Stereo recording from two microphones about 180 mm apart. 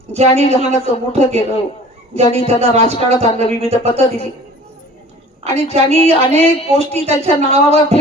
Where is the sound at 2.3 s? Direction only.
35° right (ahead or behind).